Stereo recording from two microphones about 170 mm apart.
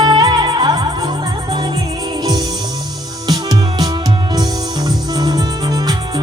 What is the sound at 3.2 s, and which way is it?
Music, 25° right (ahead or behind).